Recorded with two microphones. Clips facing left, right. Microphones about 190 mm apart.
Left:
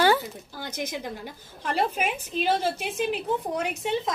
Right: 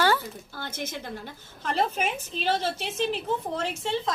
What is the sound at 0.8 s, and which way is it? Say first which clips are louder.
A woman's voice: left 3 dB; 10° left (ahead or behind).